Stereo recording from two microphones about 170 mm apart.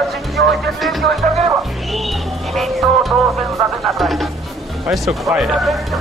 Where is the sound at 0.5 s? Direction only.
Centre (ahead or behind).